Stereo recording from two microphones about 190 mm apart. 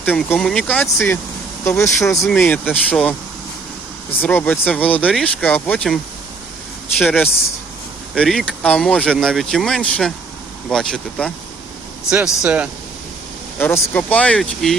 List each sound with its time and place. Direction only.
0.0 s speech: 10° left (ahead or behind)
2.2 s speech: 5° left (ahead or behind)
4.2 s speech: 10° left (ahead or behind)
7.0 s speech: centre (ahead or behind)
13.6 s speech: 10° left (ahead or behind)